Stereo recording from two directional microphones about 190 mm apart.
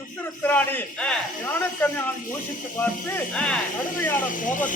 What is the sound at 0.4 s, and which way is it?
A man's voice, 10° left (ahead or behind).